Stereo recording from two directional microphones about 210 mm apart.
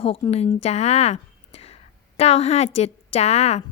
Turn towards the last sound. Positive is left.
turn(degrees=30)  # may be behind; listen again after turning